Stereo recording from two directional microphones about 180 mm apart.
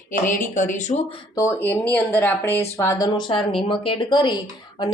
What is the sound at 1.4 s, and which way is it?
A woman's voice, 15° left (ahead or behind).